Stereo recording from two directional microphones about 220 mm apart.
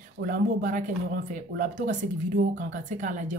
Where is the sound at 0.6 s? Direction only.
35° right (ahead or behind).